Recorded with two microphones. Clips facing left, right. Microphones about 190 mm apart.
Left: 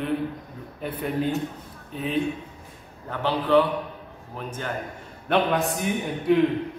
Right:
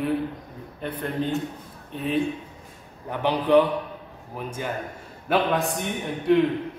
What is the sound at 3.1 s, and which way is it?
A man's voice, 15° right (ahead or behind).